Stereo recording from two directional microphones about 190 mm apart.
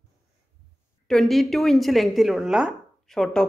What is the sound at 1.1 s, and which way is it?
Speech, centre (ahead or behind).